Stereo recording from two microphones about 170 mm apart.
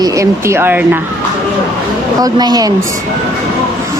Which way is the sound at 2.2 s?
25° right (ahead or behind).